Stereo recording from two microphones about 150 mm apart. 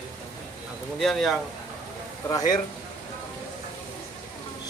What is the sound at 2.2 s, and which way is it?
Speech, 25° left (ahead or behind).